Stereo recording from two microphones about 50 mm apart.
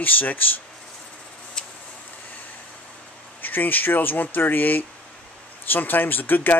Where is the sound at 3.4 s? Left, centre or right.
Left.